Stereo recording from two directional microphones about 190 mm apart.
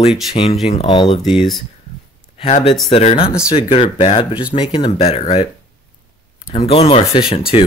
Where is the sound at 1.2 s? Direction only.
Centre (ahead or behind).